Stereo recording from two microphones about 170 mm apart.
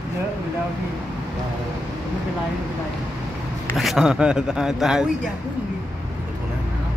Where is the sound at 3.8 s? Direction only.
Centre (ahead or behind).